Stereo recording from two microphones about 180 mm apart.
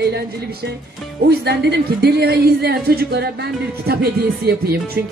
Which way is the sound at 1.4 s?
70° right (ahead or behind).